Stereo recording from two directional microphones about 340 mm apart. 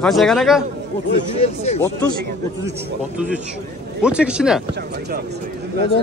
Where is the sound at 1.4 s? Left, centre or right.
Centre.